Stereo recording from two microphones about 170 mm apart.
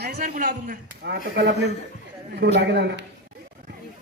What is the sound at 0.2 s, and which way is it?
A man's voice, 55° right (ahead or behind).